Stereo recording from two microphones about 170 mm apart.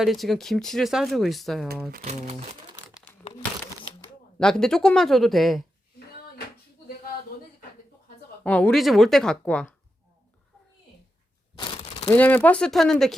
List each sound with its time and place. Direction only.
0.0 s speech: centre (ahead or behind)
2.0 s speech: 40° right (ahead or behind)
4.4 s speech: 5° left (ahead or behind)
8.4 s speech: 10° left (ahead or behind)
11.5 s crumpling: 30° left (ahead or behind)
12.1 s speech: 10° left (ahead or behind)